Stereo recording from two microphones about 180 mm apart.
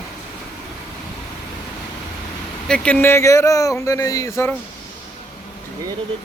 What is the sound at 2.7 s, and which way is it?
Speech, 5° left (ahead or behind).